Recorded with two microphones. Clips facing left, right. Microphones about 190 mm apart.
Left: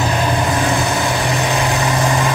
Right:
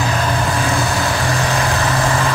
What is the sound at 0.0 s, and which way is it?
Vehicle, 20° left (ahead or behind).